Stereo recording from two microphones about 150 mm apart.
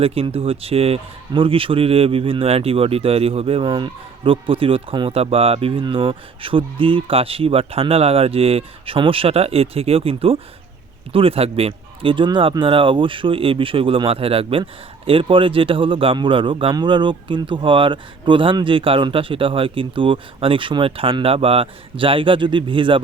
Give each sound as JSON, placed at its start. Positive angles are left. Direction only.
{"t": 0.0, "sound": "speech", "side_deg": -40}